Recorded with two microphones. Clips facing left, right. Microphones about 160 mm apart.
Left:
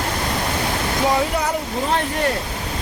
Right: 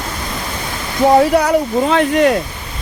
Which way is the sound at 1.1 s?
65° right (ahead or behind).